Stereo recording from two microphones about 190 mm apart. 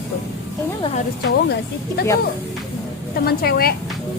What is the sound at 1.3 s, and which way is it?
Speech, 60° left (ahead or behind).